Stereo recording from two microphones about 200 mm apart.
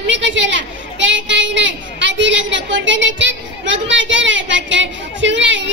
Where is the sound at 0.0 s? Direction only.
65° right (ahead or behind).